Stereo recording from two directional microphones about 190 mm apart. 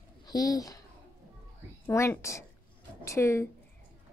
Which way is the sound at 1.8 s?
15° left (ahead or behind).